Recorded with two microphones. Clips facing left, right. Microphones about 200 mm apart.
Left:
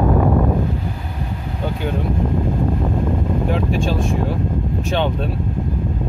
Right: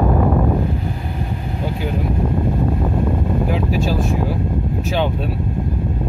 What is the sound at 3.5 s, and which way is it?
Speech, 5° right (ahead or behind).